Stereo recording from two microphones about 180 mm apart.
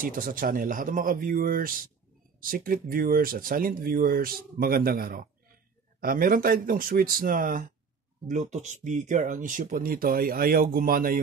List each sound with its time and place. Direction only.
0.0 s speech: 50° right (ahead or behind)